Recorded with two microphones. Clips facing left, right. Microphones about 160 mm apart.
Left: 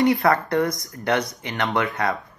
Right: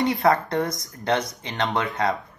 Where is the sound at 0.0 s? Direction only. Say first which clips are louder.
Left 2 dB; 25° right (ahead or behind).